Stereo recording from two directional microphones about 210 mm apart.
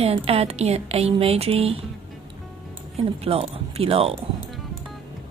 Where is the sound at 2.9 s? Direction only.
30° right (ahead or behind).